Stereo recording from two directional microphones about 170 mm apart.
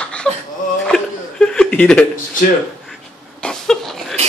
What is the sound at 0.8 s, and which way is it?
Chuckle, 5° left (ahead or behind).